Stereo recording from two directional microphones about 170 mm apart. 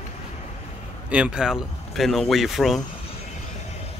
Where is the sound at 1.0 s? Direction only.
10° right (ahead or behind).